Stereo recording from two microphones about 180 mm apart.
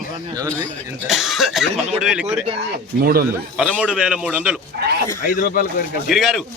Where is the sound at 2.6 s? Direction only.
55° right (ahead or behind).